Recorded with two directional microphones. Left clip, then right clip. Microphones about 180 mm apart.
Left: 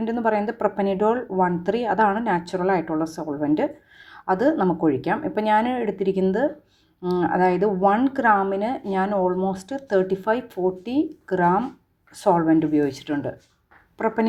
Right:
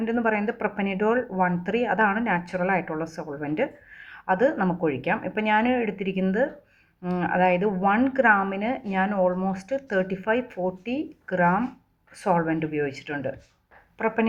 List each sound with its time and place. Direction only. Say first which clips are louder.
0.0 s speech: left 2 dB; 40° left (ahead or behind)